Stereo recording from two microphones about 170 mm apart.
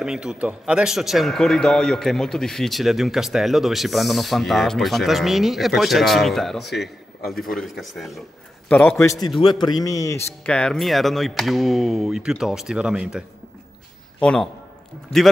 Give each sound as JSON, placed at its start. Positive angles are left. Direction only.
{"t": 0.0, "sound": "a man's voice", "side_deg": -5}
{"t": 10.4, "sound": "a man's voice", "side_deg": 5}
{"t": 14.2, "sound": "a man's voice", "side_deg": 5}